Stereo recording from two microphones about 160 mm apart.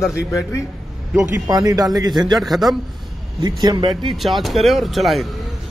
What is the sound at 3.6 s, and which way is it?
Speech, 25° right (ahead or behind).